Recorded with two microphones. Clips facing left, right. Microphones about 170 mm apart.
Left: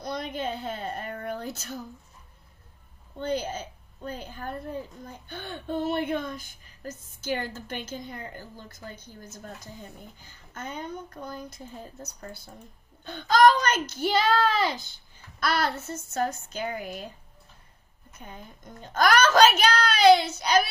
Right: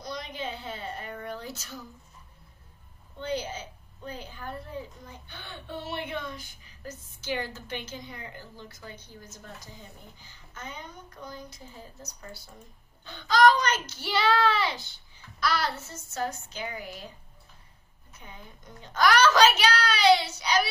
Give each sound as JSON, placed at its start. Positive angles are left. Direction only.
{"t": 0.0, "sound": "speech", "side_deg": 55}
{"t": 3.2, "sound": "a woman's voice", "side_deg": 50}
{"t": 15.4, "sound": "a woman's voice", "side_deg": 55}
{"t": 18.2, "sound": "a woman's voice", "side_deg": 50}